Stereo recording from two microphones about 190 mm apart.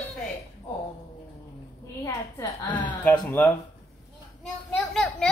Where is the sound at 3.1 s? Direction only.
10° left (ahead or behind).